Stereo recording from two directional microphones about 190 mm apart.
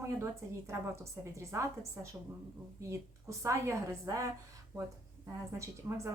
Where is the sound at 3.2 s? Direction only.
15° right (ahead or behind).